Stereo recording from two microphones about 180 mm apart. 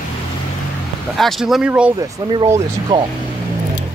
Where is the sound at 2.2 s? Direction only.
20° right (ahead or behind).